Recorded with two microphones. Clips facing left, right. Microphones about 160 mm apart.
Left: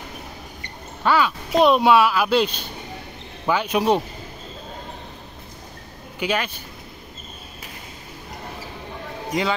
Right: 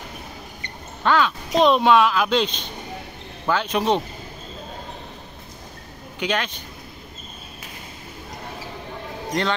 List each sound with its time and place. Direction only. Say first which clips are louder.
1.0 s speech: even; 10° left (ahead or behind)
6.1 s speech: left 1 dB; 5° left (ahead or behind)
9.3 s speech: left 1 dB; 5° left (ahead or behind)